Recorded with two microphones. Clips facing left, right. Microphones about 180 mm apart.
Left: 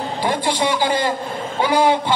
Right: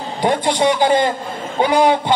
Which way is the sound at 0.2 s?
20° right (ahead or behind).